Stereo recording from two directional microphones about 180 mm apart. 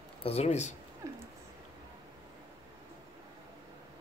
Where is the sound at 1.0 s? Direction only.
15° right (ahead or behind).